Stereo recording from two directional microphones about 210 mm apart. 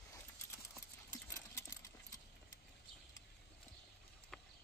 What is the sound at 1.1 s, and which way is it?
Sewing machine, 15° left (ahead or behind).